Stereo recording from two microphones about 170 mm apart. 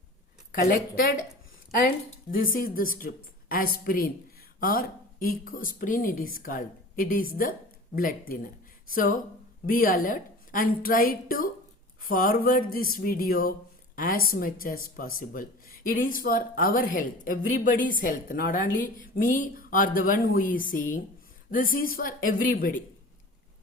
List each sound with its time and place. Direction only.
0.5 s speech: 60° left (ahead or behind)
2.3 s speech: 55° left (ahead or behind)
9.6 s a woman's voice: 55° left (ahead or behind)